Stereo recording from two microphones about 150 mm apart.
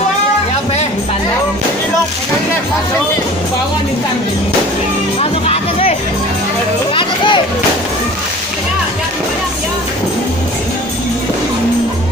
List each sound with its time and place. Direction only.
5.2 s music: 40° left (ahead or behind)
6.9 s children playing: 35° left (ahead or behind)